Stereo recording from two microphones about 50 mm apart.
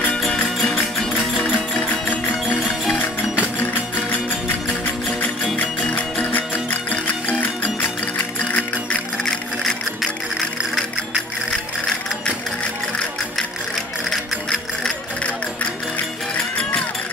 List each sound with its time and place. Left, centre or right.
0.2 s music: centre
5.6 s music: left